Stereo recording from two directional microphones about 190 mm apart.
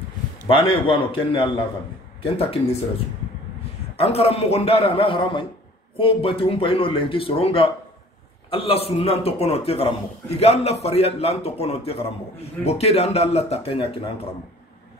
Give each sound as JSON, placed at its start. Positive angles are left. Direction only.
{"t": 0.5, "sound": "a man's voice", "side_deg": 25}
{"t": 3.9, "sound": "a man's voice", "side_deg": 30}